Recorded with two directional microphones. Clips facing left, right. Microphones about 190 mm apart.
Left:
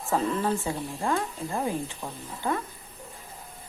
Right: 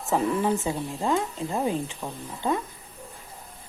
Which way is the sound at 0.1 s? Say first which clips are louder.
Right 2 dB; 15° right (ahead or behind).